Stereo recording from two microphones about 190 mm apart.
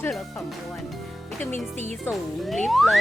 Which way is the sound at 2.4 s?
Centre (ahead or behind).